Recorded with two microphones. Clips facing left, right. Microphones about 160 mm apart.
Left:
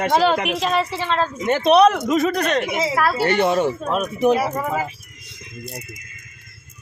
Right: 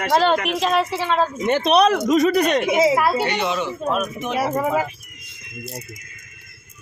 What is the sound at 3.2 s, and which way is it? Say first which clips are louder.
Speech: left 5 dB; 50° left (ahead or behind).